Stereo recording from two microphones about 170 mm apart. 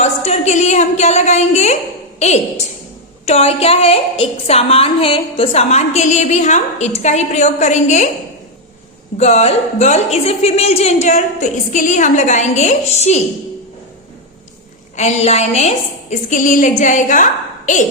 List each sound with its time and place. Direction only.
0.0 s a woman's voice: 40° left (ahead or behind)
9.1 s a woman's voice: 40° left (ahead or behind)
14.9 s a woman's voice: 40° left (ahead or behind)